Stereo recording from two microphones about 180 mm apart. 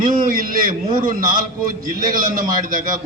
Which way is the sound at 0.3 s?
50° right (ahead or behind).